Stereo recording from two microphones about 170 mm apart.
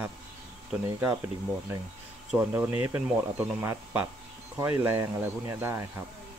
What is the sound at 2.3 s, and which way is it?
Speech, 10° right (ahead or behind).